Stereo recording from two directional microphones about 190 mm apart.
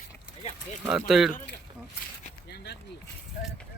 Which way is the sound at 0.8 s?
5° right (ahead or behind).